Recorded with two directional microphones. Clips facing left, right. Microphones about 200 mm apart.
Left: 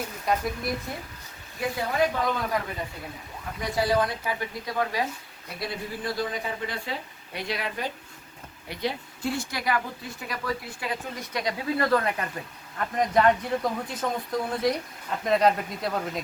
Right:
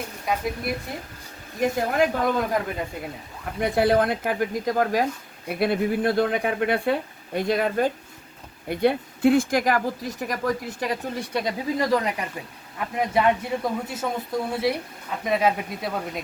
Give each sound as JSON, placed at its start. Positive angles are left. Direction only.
{"t": 1.6, "sound": "speech", "side_deg": -45}
{"t": 3.6, "sound": "speech", "side_deg": -55}
{"t": 5.5, "sound": "speech", "side_deg": -55}
{"t": 11.8, "sound": "speech", "side_deg": -15}